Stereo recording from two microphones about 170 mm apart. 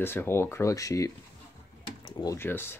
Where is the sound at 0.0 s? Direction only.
15° left (ahead or behind).